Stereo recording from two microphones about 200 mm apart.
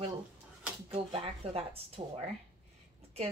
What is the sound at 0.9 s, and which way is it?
Speech, 30° right (ahead or behind).